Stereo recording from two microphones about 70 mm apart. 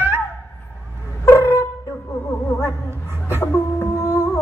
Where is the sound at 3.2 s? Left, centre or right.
Left.